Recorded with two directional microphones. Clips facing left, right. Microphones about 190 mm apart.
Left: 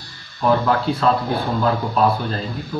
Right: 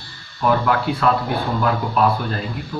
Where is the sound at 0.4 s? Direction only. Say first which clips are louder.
Left 1 dB; 20° left (ahead or behind).